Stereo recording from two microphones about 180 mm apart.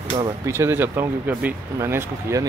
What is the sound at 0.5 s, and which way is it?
A man's voice, 15° right (ahead or behind).